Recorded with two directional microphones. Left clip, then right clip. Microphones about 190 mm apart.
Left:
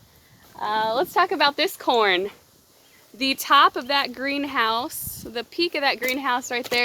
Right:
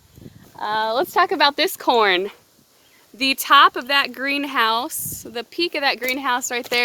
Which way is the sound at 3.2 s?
30° right (ahead or behind).